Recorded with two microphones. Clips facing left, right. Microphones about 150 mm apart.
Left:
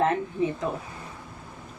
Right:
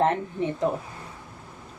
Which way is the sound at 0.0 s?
35° right (ahead or behind).